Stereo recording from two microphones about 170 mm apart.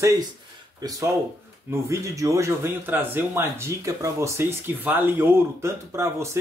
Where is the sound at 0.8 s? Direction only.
20° right (ahead or behind).